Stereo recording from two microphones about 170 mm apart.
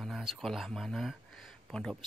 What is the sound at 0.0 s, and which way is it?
Speech, centre (ahead or behind).